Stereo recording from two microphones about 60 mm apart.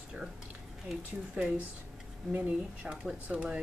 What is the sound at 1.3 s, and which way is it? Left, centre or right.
Speech, right.